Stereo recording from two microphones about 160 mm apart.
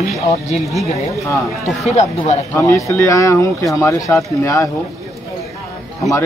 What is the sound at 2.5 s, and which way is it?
Speech, 20° left (ahead or behind).